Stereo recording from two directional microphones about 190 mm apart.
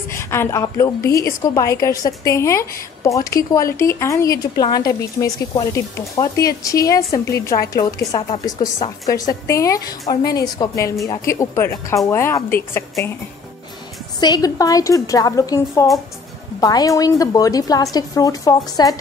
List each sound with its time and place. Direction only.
0.1 s a woman's voice: 15° left (ahead or behind)
14.2 s a woman's voice: 20° left (ahead or behind)